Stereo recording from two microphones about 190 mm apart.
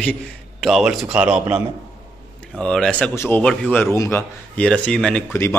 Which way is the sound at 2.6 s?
5° left (ahead or behind).